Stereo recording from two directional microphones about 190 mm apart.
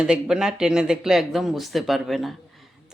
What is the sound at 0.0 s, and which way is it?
Speech, 5° right (ahead or behind).